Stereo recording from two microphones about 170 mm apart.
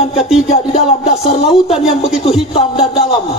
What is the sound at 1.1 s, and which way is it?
Music, 35° left (ahead or behind).